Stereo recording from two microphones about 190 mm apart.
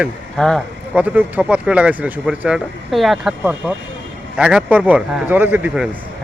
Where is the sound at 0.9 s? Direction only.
10° right (ahead or behind).